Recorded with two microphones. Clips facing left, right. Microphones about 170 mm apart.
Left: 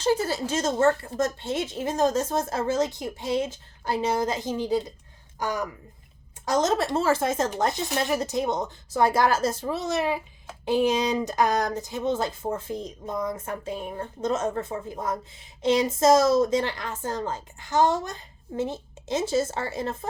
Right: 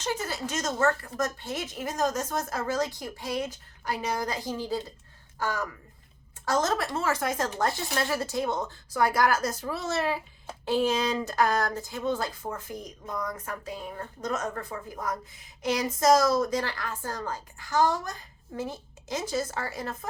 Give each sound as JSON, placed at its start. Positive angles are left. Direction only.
{"t": 0.0, "sound": "speech", "side_deg": 30}